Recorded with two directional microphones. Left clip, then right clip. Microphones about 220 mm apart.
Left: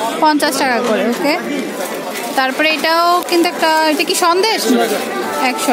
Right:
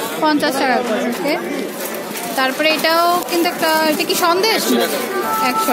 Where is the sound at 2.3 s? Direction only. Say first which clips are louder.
Left 2 dB; 15° left (ahead or behind).